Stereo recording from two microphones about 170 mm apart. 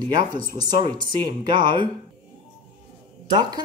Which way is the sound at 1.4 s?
25° right (ahead or behind).